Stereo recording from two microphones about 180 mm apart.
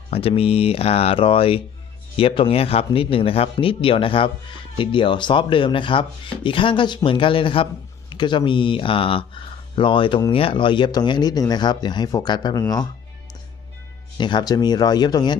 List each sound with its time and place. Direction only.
0.1 s speech: 30° left (ahead or behind)